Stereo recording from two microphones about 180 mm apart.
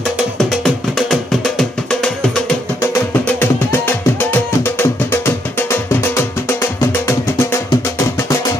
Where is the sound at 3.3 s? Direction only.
10° left (ahead or behind).